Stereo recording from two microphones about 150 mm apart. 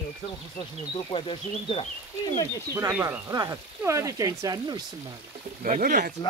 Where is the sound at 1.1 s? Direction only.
40° left (ahead or behind).